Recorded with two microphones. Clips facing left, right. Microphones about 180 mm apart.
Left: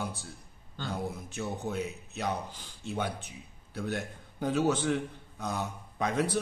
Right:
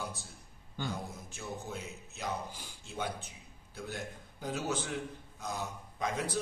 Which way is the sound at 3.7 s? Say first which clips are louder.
Left 7 dB; 65° left (ahead or behind).